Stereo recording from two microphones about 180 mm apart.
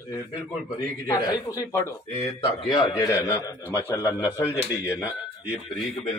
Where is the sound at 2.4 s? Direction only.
30° left (ahead or behind).